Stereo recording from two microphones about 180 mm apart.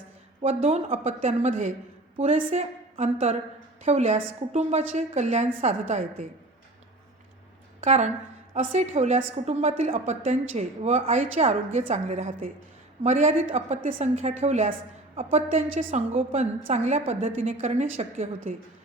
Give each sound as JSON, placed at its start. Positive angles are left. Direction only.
{"t": 0.4, "sound": "a woman's voice", "side_deg": -35}
{"t": 7.9, "sound": "a woman's voice", "side_deg": -40}